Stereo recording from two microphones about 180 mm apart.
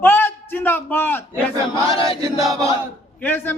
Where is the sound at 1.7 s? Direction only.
30° left (ahead or behind).